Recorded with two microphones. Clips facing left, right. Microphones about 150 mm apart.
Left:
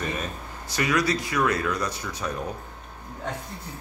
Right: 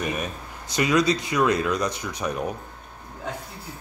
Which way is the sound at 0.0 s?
15° right (ahead or behind).